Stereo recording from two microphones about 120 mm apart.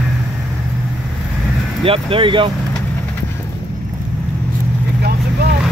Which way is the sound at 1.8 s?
50° right (ahead or behind).